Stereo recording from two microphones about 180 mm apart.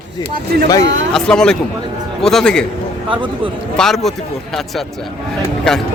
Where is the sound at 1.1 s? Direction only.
5° left (ahead or behind).